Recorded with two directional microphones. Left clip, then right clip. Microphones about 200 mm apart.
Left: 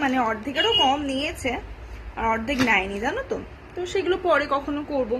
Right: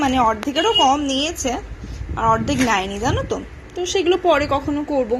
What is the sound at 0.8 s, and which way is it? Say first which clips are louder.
Speech: right 5 dB; 20° right (ahead or behind).